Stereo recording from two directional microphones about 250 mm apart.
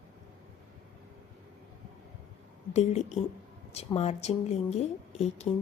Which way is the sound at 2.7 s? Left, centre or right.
Left.